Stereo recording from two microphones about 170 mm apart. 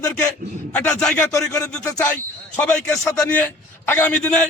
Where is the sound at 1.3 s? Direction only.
20° left (ahead or behind).